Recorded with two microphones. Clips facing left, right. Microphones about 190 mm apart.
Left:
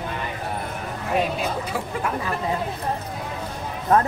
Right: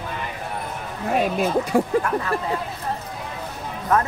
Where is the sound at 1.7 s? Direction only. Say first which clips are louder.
Right 9 dB; 45° right (ahead or behind).